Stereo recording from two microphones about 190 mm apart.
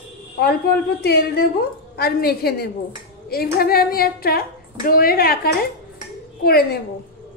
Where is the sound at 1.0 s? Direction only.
55° left (ahead or behind).